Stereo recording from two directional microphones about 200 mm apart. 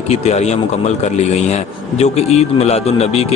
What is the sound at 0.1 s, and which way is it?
A man's voice, 35° left (ahead or behind).